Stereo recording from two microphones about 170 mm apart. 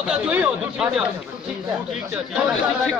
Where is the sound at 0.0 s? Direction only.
5° right (ahead or behind).